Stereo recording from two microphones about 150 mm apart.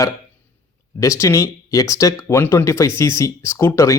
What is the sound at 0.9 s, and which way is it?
Speech, 20° left (ahead or behind).